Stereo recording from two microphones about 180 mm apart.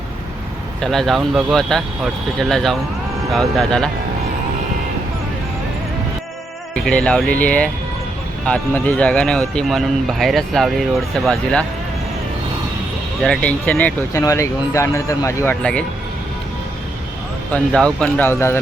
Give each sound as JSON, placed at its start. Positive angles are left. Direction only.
{"t": 0.8, "sound": "speech", "side_deg": 0}
{"t": 6.8, "sound": "speech", "side_deg": 5}
{"t": 13.2, "sound": "speech", "side_deg": 5}
{"t": 17.5, "sound": "speech", "side_deg": 5}